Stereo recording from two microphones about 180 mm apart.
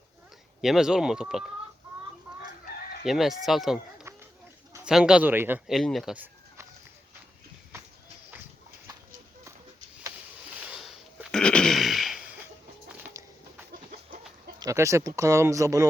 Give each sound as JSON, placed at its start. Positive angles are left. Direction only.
{"t": 0.6, "sound": "speech", "side_deg": 0}
{"t": 3.0, "sound": "speech", "side_deg": 0}
{"t": 10.7, "sound": "a sound", "side_deg": -5}
{"t": 14.6, "sound": "speech", "side_deg": -15}